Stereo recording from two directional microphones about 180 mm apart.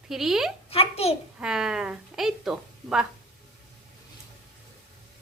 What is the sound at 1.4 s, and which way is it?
A woman's voice, 5° right (ahead or behind).